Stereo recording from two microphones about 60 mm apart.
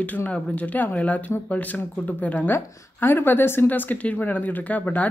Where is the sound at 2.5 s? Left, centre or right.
Left.